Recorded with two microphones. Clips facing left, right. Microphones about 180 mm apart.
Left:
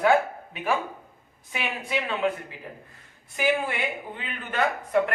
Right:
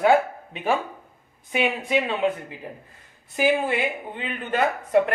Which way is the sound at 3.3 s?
25° right (ahead or behind).